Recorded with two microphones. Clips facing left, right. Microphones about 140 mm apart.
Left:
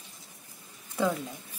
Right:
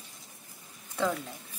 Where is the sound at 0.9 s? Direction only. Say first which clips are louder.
Left 2 dB; 5° left (ahead or behind).